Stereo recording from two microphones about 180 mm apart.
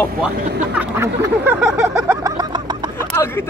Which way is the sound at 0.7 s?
15° right (ahead or behind).